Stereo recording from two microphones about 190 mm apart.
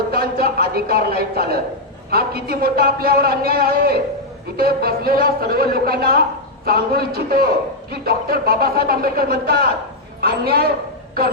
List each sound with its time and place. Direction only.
0.1 s a man's voice: 50° right (ahead or behind)